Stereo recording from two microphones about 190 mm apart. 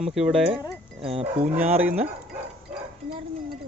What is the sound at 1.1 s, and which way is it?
Livestock, 30° right (ahead or behind).